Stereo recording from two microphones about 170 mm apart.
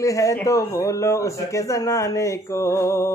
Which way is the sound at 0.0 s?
20° left (ahead or behind).